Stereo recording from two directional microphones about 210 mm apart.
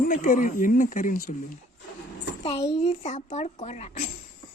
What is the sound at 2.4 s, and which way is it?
Speech, 30° left (ahead or behind).